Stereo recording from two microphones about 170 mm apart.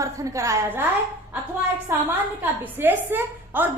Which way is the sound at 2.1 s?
10° right (ahead or behind).